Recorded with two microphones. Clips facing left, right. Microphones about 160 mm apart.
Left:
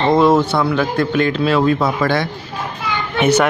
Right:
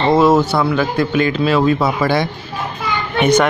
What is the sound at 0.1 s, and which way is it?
Speech, centre (ahead or behind).